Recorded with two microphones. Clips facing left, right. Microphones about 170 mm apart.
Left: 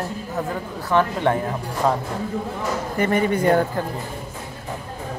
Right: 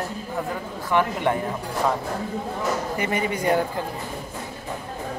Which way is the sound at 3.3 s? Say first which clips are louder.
Left 3 dB; 50° left (ahead or behind).